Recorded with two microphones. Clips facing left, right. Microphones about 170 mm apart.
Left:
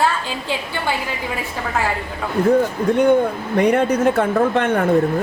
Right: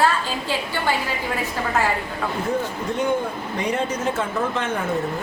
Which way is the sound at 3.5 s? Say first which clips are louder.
Left 9 dB; 60° left (ahead or behind).